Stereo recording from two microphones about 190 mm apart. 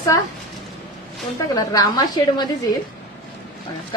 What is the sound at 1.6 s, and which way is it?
Speech, 20° left (ahead or behind).